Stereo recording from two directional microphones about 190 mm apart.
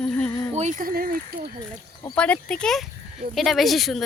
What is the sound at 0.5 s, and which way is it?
Speech, 40° right (ahead or behind).